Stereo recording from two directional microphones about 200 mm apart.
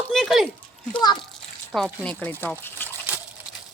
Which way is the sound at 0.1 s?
Centre (ahead or behind).